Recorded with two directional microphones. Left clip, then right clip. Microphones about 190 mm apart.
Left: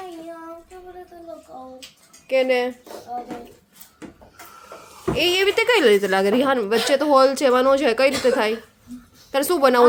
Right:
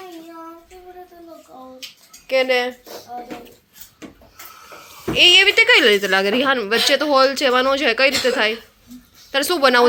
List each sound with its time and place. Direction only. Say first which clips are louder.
1.5 s bathtub: even; 5° left (ahead or behind)
2.2 s speech: right 2 dB; centre (ahead or behind)
5.1 s a woman's voice: right 8 dB; 15° left (ahead or behind)